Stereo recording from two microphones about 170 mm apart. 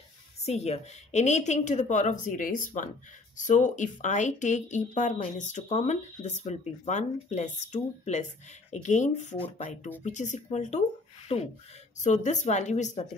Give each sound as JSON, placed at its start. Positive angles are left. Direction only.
{"t": 0.5, "sound": "speech", "side_deg": 40}